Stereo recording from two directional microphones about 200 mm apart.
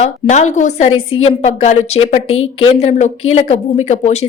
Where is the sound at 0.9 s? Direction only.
90° left.